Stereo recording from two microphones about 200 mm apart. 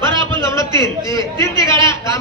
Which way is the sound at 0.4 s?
15° left (ahead or behind).